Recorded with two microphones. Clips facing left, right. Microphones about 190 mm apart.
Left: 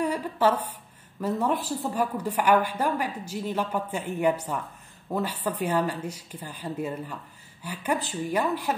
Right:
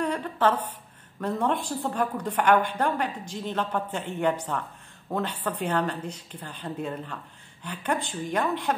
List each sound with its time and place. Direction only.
0.0 s a woman's voice: 10° left (ahead or behind)